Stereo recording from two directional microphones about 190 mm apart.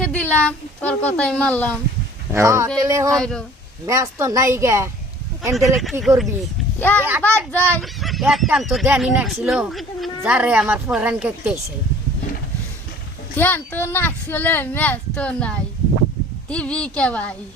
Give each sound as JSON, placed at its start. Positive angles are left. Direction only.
{"t": 0.0, "sound": "a child's voice", "side_deg": 5}
{"t": 2.3, "sound": "a woman's voice", "side_deg": -15}
{"t": 3.1, "sound": "speech", "side_deg": 5}
{"t": 3.8, "sound": "a woman's voice", "side_deg": -15}
{"t": 5.8, "sound": "a child's voice", "side_deg": 0}
{"t": 13.3, "sound": "a child's voice", "side_deg": 10}